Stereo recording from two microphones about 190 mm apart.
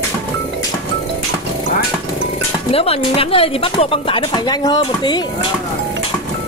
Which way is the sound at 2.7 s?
30° left (ahead or behind).